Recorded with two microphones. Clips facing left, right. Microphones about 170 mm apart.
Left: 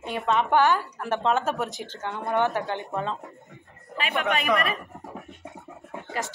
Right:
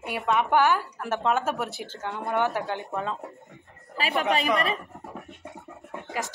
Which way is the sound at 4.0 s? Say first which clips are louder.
Right 1 dB; 35° right (ahead or behind).